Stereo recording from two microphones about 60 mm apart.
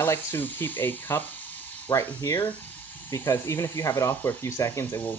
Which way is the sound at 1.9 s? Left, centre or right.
Left.